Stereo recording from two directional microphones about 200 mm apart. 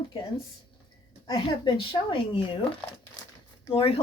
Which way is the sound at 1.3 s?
20° left (ahead or behind).